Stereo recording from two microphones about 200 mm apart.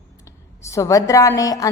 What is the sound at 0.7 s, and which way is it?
Speech, 15° left (ahead or behind).